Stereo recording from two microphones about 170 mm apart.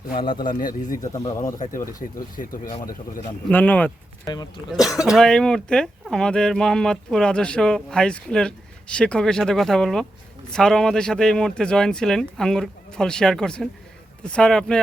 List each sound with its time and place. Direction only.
0.4 s a man's voice: 55° left (ahead or behind)
1.0 s a man's voice: 20° left (ahead or behind)
1.5 s a man's voice: 50° left (ahead or behind)
3.5 s speech: 10° left (ahead or behind)
4.7 s speech: centre (ahead or behind)